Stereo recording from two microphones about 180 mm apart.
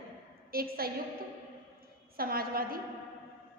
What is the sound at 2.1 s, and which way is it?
Speech, 55° right (ahead or behind).